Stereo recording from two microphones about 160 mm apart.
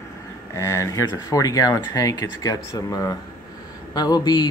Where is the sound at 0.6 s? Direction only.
20° left (ahead or behind).